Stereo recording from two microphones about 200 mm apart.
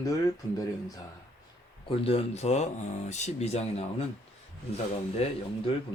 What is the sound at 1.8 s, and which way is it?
Speech, 30° left (ahead or behind).